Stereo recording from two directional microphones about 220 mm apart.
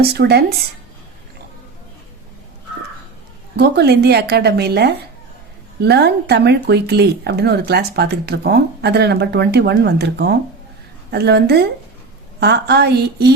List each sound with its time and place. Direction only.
0.0 s speech: 45° right (ahead or behind)
3.6 s speech: 50° right (ahead or behind)